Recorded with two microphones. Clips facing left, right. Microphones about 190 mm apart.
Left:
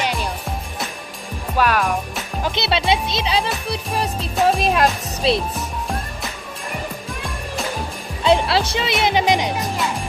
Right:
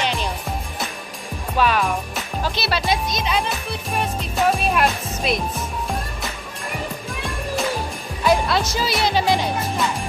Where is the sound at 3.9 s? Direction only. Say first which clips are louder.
Even; 30° left (ahead or behind).